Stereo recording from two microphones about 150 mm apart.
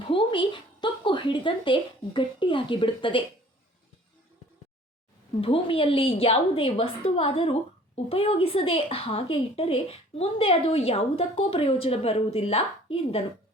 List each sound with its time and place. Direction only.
0.1 s speech: 30° left (ahead or behind)
5.4 s a woman's voice: 35° left (ahead or behind)